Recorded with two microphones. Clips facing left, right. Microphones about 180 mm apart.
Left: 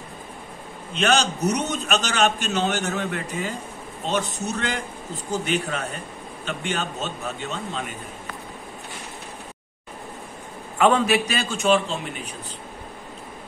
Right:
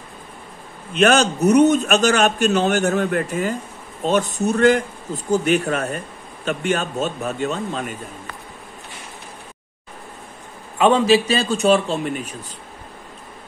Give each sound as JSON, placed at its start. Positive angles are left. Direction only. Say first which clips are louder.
{"t": 0.9, "sound": "a man's voice", "louder": "right 6 dB", "side_deg": -50}
{"t": 10.8, "sound": "a man's voice", "louder": "right 4 dB", "side_deg": -25}